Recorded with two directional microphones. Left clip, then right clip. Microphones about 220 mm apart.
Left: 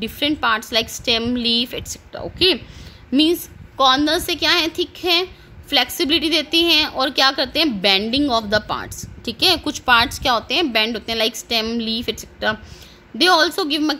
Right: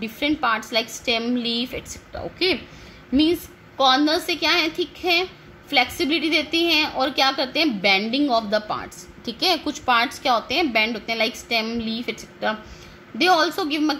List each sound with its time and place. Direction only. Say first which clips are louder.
0.0 s a woman's voice: left 3 dB; 40° left (ahead or behind)